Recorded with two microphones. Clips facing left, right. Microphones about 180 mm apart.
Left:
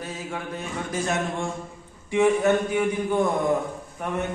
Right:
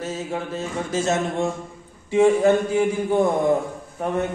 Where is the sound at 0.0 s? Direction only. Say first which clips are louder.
Right 5 dB; 25° right (ahead or behind).